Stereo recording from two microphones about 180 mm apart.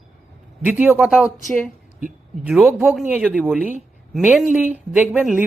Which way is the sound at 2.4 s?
10° right (ahead or behind).